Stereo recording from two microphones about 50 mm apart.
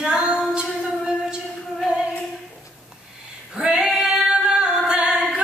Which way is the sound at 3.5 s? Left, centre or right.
Centre.